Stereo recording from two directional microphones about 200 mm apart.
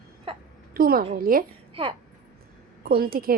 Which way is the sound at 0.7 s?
45° right (ahead or behind).